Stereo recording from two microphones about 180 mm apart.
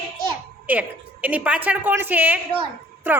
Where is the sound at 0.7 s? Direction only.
10° right (ahead or behind).